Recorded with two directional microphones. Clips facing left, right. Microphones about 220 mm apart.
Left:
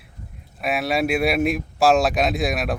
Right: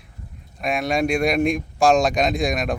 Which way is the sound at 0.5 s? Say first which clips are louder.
Even; 5° left (ahead or behind).